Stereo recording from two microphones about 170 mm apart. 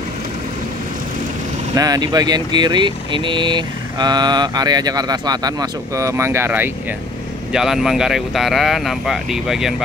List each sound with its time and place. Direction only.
1.8 s speech: 20° right (ahead or behind); by 9.8 s centre (ahead or behind)